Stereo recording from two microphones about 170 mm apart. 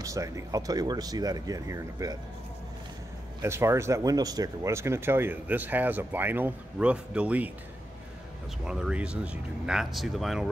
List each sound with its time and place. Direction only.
0.0 s speech: 20° right (ahead or behind)
3.3 s speech: 15° right (ahead or behind)
8.6 s speech: 5° right (ahead or behind)